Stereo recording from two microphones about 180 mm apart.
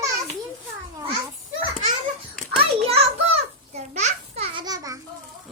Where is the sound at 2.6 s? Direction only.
35° right (ahead or behind).